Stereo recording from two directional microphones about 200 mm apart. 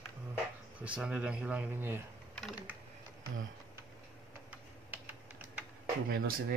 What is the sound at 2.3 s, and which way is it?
Typing, 5° right (ahead or behind).